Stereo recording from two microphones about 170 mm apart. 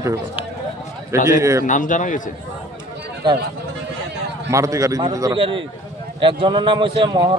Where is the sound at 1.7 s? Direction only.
50° left (ahead or behind).